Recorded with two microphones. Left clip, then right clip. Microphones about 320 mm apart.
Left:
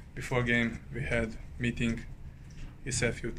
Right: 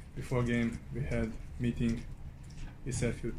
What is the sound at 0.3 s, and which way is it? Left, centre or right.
Speech, left.